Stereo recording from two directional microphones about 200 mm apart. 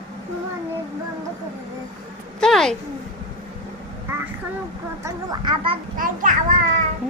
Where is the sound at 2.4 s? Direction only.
Centre (ahead or behind).